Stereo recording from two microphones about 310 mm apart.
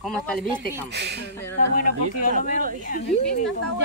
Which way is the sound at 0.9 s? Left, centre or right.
Right.